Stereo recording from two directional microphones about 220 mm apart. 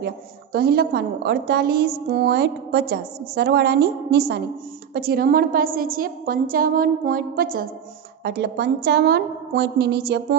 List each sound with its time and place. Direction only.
0.0 s a woman's voice: 45° right (ahead or behind)